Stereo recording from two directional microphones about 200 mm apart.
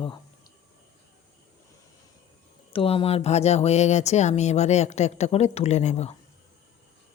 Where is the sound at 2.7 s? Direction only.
30° left (ahead or behind).